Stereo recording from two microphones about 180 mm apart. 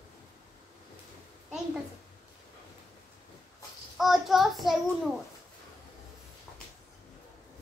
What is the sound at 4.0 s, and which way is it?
Child singing, centre (ahead or behind).